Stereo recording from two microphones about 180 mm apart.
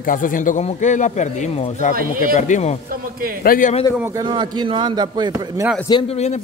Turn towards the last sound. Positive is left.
turn(degrees=30)  # may be behind; listen again after turning